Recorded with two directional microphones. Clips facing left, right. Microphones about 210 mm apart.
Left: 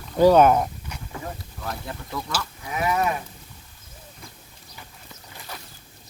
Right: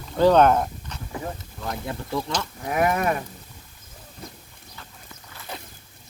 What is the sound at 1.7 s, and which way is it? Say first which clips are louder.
Speech: right 6 dB; 25° right (ahead or behind).